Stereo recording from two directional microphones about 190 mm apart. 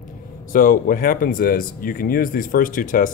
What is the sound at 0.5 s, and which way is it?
Speech, 45° left (ahead or behind).